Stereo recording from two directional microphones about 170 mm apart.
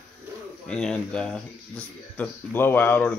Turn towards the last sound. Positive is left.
turn(degrees=10)  # may be behind; listen again after turning